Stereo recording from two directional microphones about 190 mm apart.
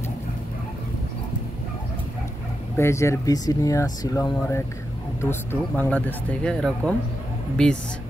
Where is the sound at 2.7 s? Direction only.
15° left (ahead or behind).